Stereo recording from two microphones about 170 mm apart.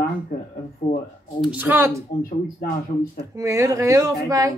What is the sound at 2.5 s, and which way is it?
Speech, 60° left (ahead or behind).